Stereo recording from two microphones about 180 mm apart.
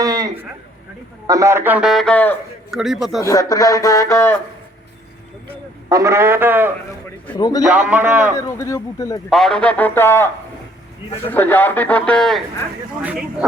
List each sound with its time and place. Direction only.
0.0 s a sound: 20° right (ahead or behind)
1.3 s a man's voice: 15° right (ahead or behind)
3.2 s a man's voice: 20° left (ahead or behind)
5.9 s a man's voice: 15° right (ahead or behind)
7.3 s a man's voice: 20° left (ahead or behind)
7.6 s a man's voice: 5° right (ahead or behind)
8.4 s a man's voice: 15° left (ahead or behind)
9.3 s a man's voice: 5° left (ahead or behind)
13.0 s a man's voice: 5° right (ahead or behind)